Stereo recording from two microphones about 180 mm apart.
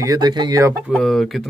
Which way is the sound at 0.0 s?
20° right (ahead or behind).